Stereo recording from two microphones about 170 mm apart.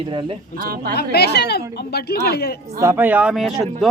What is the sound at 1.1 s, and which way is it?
Speech, 75° left (ahead or behind).